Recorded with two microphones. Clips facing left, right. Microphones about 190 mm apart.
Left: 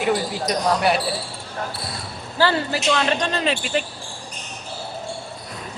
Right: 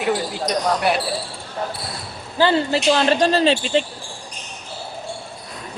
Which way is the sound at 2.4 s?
20° right (ahead or behind).